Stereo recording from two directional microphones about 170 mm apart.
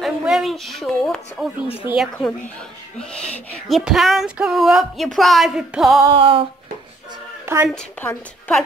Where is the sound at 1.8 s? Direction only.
5° right (ahead or behind).